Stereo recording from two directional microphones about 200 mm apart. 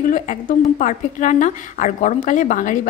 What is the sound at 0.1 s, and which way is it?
A woman's voice, 40° left (ahead or behind).